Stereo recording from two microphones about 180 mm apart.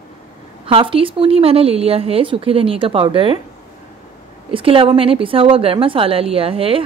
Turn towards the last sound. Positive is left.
turn(degrees=-30)  # may be behind; listen again after turning